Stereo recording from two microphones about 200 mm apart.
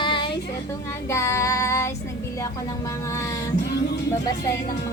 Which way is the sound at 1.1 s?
15° left (ahead or behind).